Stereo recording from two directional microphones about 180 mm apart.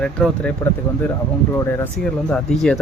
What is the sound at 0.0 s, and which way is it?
Speech, 5° left (ahead or behind).